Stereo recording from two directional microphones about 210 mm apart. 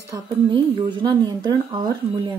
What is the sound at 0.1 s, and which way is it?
A woman's voice, 20° right (ahead or behind).